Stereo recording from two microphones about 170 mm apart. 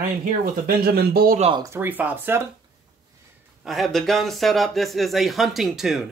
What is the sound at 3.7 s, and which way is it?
Speech, centre (ahead or behind).